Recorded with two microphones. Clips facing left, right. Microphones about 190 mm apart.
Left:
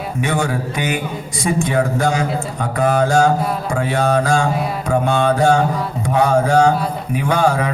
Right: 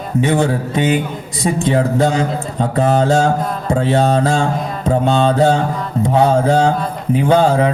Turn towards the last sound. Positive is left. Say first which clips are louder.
# right 4 dB
turn(degrees=-25)  # may be behind; listen again after turning